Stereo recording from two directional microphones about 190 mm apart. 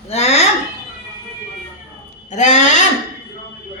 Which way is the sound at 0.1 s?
35° left (ahead or behind).